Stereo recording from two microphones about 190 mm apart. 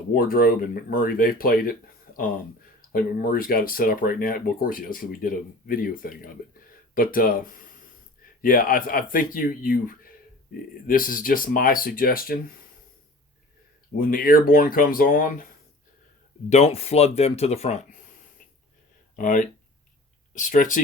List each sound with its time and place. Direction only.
0.1 s speech: 50° left (ahead or behind)
2.9 s speech: 50° left (ahead or behind)
13.9 s speech: 50° left (ahead or behind)
16.5 s speech: 35° left (ahead or behind)
19.1 s speech: 45° left (ahead or behind)